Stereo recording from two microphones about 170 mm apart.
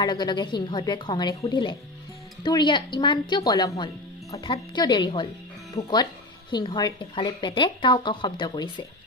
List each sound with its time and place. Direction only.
0.0 s speech: 25° left (ahead or behind)